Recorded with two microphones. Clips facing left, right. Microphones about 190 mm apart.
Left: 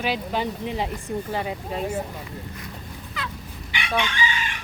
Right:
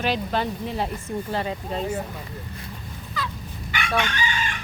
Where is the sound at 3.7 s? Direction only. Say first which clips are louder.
Right 1 dB; 50° right (ahead or behind).